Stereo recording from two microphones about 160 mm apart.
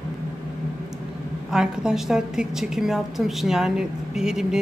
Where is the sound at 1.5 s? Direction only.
5° right (ahead or behind).